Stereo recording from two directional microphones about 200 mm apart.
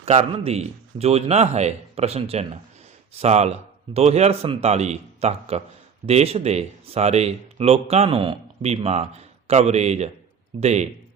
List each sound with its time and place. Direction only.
0.0 s a man's voice: 30° right (ahead or behind)